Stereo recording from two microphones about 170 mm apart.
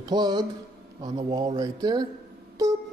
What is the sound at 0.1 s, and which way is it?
Speech, 25° right (ahead or behind).